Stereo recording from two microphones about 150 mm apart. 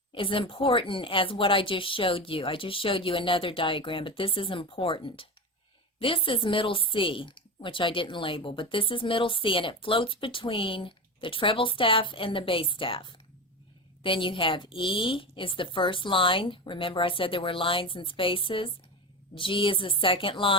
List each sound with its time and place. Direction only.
0.1 s speech: 35° left (ahead or behind)